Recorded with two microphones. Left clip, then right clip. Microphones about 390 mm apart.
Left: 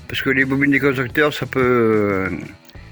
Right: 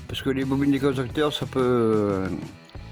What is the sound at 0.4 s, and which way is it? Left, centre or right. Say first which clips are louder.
Speech: left 6 dB; right.